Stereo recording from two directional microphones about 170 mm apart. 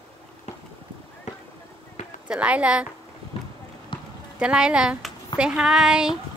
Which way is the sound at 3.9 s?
30° left (ahead or behind).